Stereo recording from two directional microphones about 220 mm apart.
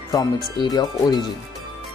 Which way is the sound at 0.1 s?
15° left (ahead or behind).